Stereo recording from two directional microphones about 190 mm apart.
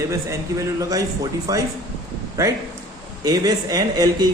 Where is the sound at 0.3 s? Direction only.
15° right (ahead or behind).